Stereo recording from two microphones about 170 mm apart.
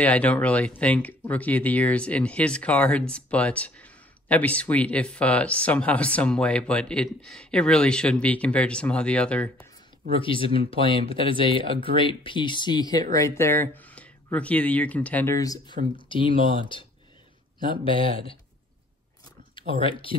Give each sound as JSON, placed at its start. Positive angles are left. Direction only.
{"t": 0.0, "sound": "speech", "side_deg": 10}
{"t": 10.1, "sound": "speech", "side_deg": 30}
{"t": 15.3, "sound": "speech", "side_deg": 20}
{"t": 19.5, "sound": "speech", "side_deg": 30}